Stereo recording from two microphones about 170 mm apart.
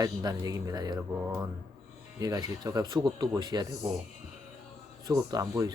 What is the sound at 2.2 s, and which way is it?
Speech, 20° right (ahead or behind).